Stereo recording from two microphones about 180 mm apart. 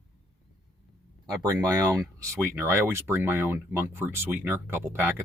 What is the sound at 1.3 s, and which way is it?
Speech, 20° right (ahead or behind).